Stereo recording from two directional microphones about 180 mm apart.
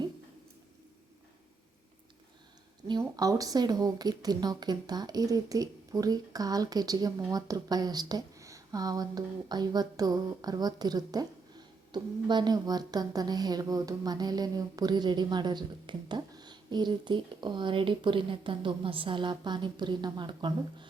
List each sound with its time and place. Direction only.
2.8 s a woman's voice: 20° right (ahead or behind)